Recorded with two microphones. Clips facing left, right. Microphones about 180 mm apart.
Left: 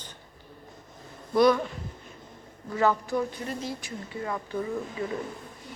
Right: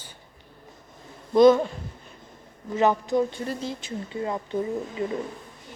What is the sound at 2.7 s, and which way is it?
Speech, 20° right (ahead or behind).